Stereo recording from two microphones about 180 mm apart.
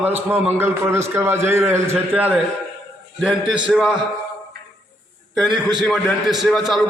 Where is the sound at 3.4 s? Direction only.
25° right (ahead or behind).